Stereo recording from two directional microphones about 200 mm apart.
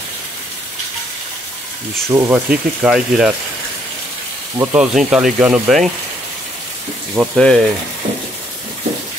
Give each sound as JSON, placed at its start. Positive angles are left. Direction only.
{"t": 2.0, "sound": "speech", "side_deg": -15}
{"t": 4.6, "sound": "speech", "side_deg": -5}
{"t": 7.2, "sound": "speech", "side_deg": 0}